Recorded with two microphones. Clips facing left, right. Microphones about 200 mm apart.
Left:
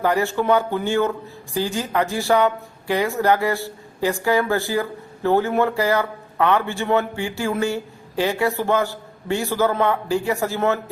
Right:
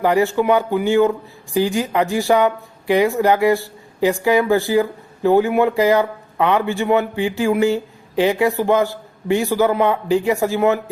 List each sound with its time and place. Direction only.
0.0 s a woman's voice: 15° right (ahead or behind)